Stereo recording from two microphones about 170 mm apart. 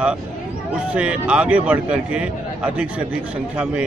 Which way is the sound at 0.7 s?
5° right (ahead or behind).